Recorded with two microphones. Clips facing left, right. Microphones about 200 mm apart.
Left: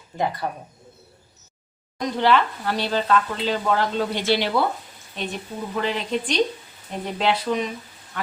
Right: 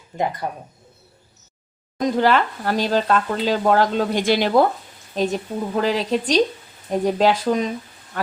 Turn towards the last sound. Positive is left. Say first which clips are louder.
# right 5 dB
turn(degrees=-45)  # may be behind; listen again after turning